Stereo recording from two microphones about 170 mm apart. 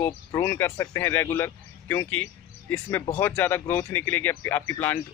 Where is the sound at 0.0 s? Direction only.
15° left (ahead or behind).